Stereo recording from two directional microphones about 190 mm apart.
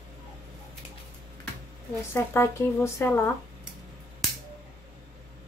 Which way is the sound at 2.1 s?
15° left (ahead or behind).